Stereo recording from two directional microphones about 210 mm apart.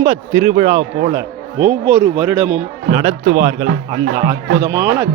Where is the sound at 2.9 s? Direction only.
40° right (ahead or behind).